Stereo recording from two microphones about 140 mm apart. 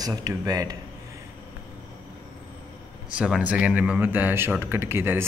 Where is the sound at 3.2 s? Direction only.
10° right (ahead or behind).